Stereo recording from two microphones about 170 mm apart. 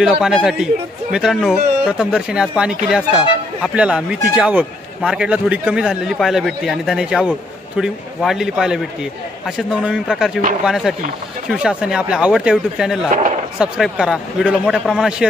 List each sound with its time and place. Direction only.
0.0 s a man's voice: 5° right (ahead or behind)